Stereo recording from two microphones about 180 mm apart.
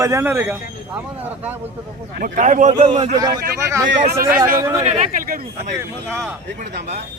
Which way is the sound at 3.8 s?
90° right.